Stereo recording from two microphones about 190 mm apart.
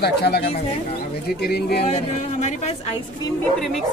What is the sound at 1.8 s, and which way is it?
Speech, 35° left (ahead or behind).